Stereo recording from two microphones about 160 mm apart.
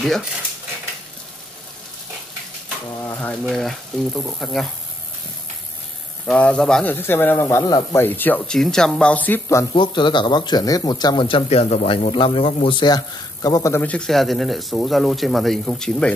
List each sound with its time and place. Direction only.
0.0 s speech: centre (ahead or behind)
3.0 s a man's voice: 10° left (ahead or behind)
6.2 s a man's voice: 5° left (ahead or behind)
9.8 s speech: 30° left (ahead or behind); by 16.1 s 5° left (ahead or behind)